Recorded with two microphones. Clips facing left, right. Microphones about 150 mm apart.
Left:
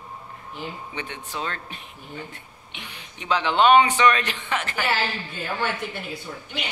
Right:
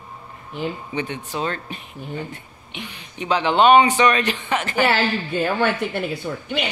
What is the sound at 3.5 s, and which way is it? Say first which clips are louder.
Speech: right 3 dB; 5° right (ahead or behind).